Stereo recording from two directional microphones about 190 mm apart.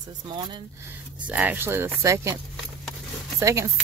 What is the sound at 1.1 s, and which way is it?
Speech, 5° right (ahead or behind).